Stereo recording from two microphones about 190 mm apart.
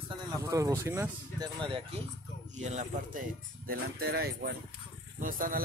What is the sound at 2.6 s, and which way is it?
Speech, 35° right (ahead or behind).